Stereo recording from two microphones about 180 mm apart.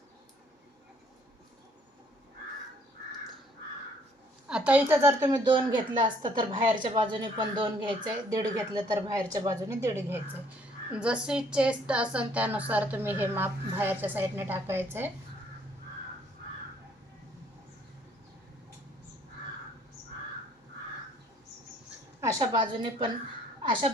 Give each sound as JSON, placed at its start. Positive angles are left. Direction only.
{"t": 4.4, "sound": "a woman's voice", "side_deg": -5}
{"t": 5.2, "sound": "a woman's voice", "side_deg": -25}
{"t": 22.2, "sound": "a woman's voice", "side_deg": -20}